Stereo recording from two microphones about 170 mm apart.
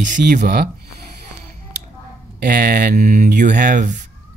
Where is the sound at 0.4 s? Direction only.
65° right (ahead or behind).